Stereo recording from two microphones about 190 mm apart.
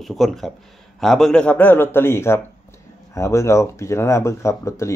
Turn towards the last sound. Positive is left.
turn(degrees=15)  # may be behind; listen again after turning